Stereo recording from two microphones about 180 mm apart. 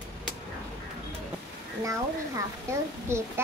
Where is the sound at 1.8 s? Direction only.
20° right (ahead or behind).